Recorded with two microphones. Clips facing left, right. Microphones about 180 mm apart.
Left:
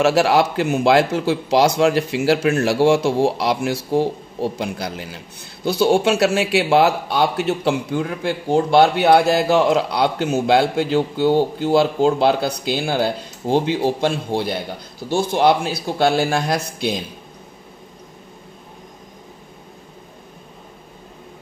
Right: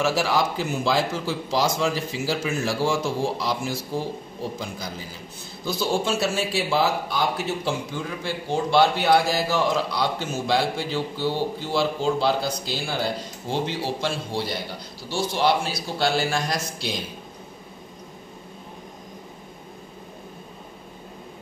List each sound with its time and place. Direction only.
0.0 s speech: 70° left (ahead or behind)